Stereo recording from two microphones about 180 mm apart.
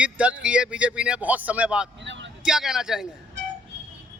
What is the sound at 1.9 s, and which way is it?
Vehicle, 85° right.